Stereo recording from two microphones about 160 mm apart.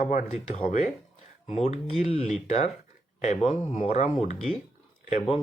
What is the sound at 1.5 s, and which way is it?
Speech, 40° left (ahead or behind).